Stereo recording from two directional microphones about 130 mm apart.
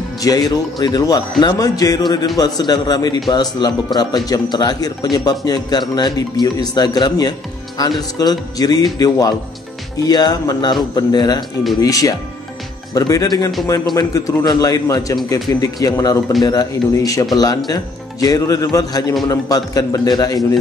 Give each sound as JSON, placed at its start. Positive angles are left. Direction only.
{"t": 0.2, "sound": "a man's voice", "side_deg": 30}